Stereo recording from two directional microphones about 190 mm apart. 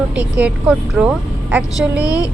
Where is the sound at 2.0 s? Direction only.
20° left (ahead or behind).